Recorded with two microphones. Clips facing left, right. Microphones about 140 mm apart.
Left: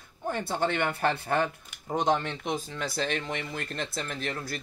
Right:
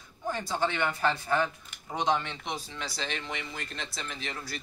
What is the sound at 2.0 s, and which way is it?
Speech, 45° left (ahead or behind).